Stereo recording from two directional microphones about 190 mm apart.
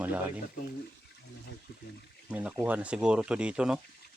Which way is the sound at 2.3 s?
5° right (ahead or behind).